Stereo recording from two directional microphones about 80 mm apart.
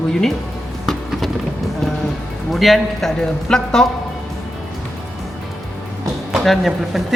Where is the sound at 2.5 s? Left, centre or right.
Centre.